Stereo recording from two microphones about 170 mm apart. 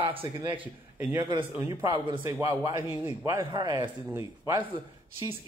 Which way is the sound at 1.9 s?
30° right (ahead or behind).